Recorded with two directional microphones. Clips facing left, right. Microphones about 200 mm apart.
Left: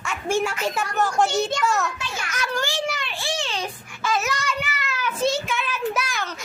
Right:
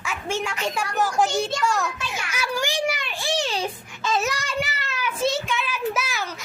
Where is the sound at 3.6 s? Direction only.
25° right (ahead or behind).